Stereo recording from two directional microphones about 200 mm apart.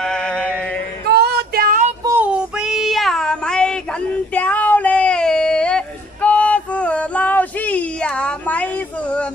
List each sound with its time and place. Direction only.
0.0 s mantra: 5° left (ahead or behind)
1.0 s female singing: 50° right (ahead or behind)
2.0 s child singing: 10° right (ahead or behind)